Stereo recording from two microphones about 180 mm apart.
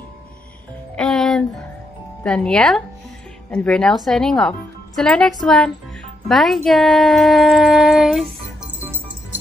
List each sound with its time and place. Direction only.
0.9 s music: centre (ahead or behind)
2.2 s speech: 5° left (ahead or behind)
6.2 s music: centre (ahead or behind)